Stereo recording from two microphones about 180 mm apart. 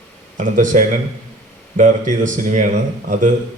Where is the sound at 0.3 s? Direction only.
45° right (ahead or behind).